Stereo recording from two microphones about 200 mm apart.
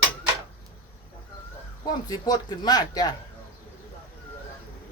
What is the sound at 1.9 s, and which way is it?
Speech, 20° left (ahead or behind).